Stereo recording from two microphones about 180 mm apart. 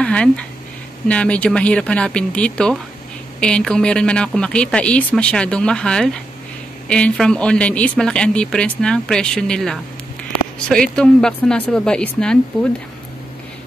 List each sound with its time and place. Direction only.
0.0 s speech: 5° left (ahead or behind)